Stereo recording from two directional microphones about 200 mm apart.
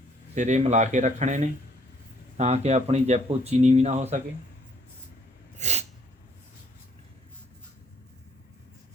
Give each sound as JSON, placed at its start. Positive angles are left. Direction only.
{"t": 0.3, "sound": "speech", "side_deg": -35}
{"t": 5.5, "sound": "sneeze", "side_deg": -35}